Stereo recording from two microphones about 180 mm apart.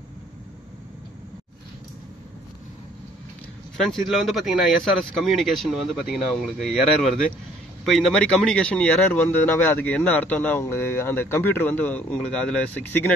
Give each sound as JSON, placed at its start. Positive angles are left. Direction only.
{"t": 3.7, "sound": "speech", "side_deg": 0}